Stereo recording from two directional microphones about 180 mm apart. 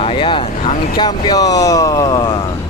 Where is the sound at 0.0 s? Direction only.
30° left (ahead or behind).